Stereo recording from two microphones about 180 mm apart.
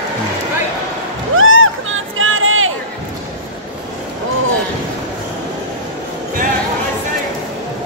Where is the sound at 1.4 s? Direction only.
90° right.